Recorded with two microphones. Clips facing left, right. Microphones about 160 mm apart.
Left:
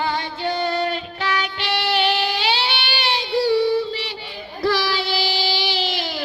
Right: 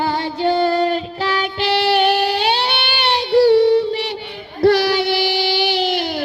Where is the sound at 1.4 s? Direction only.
35° right (ahead or behind).